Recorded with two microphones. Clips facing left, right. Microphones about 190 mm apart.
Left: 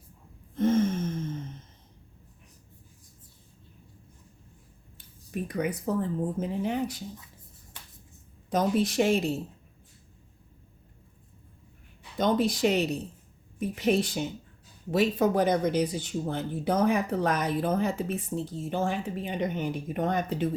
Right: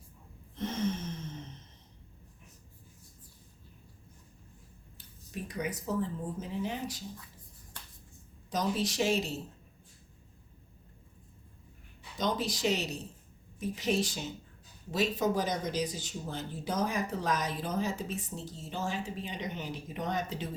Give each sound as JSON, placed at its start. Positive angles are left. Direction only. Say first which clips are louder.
{"t": 0.5, "sound": "a sound", "louder": "left 9 dB", "side_deg": 50}
{"t": 5.3, "sound": "speech", "louder": "left 6 dB", "side_deg": 55}
{"t": 8.4, "sound": "speech", "louder": "left 6 dB", "side_deg": 55}
{"t": 12.1, "sound": "speech", "louder": "left 7 dB", "side_deg": 55}